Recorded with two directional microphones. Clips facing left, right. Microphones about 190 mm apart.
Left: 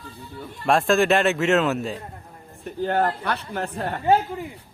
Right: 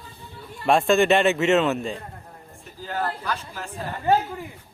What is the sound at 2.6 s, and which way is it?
A woman's voice, 60° left (ahead or behind).